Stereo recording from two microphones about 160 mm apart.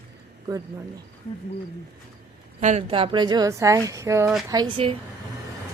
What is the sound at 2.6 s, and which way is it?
Speech, 50° right (ahead or behind).